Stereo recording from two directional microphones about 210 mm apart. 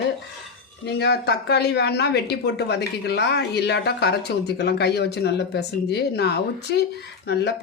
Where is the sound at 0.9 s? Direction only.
50° left (ahead or behind).